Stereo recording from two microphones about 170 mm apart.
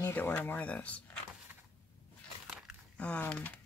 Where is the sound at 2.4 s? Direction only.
5° left (ahead or behind).